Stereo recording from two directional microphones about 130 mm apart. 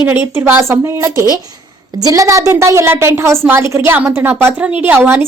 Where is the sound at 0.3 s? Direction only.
15° right (ahead or behind).